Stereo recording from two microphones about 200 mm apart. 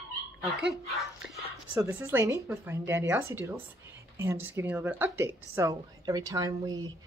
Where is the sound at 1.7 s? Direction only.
15° right (ahead or behind).